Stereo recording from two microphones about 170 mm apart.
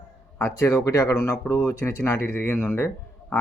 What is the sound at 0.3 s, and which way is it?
Speech, 15° left (ahead or behind).